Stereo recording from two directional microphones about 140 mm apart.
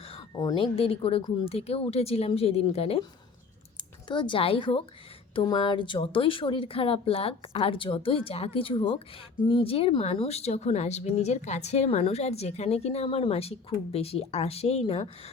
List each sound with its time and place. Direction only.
0.3 s speech: 35° left (ahead or behind)
3.8 s speech: 35° left (ahead or behind)